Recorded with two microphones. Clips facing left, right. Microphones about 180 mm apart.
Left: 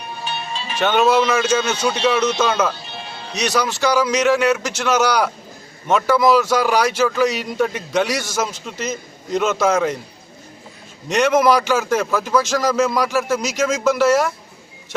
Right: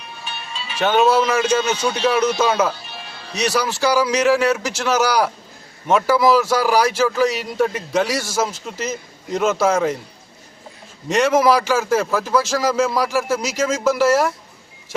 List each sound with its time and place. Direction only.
0.2 s music: 35° left (ahead or behind)
0.8 s a man's voice: 5° right (ahead or behind)
2.0 s a man's voice: 10° right (ahead or behind)
2.9 s music: 25° left (ahead or behind)
3.3 s a man's voice: 5° right (ahead or behind)
11.1 s a man's voice: 5° right (ahead or behind)